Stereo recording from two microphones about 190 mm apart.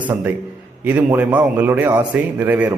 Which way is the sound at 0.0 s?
10° right (ahead or behind).